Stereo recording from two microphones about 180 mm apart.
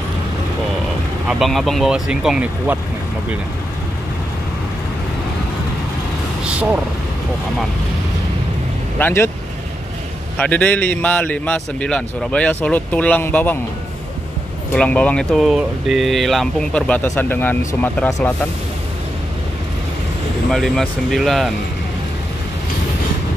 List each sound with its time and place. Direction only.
1.4 s speech: centre (ahead or behind)
6.4 s a sound: 5° right (ahead or behind)
8.9 s a man's voice: 10° left (ahead or behind)
10.3 s a man's voice: 5° left (ahead or behind)
14.7 s speech: 5° left (ahead or behind)
20.5 s speech: centre (ahead or behind)